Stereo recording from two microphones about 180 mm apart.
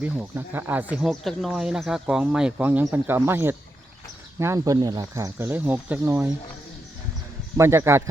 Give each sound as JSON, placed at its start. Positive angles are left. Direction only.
{"t": 0.0, "sound": "speech", "side_deg": -10}
{"t": 7.5, "sound": "speech", "side_deg": -15}